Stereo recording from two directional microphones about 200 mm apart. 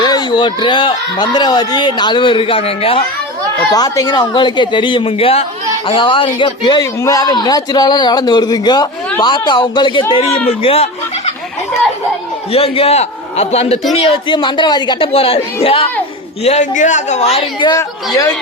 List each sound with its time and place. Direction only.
0.0 s speech: 20° left (ahead or behind)
3.7 s speech: 20° left (ahead or behind)
12.5 s a man's voice: 30° left (ahead or behind)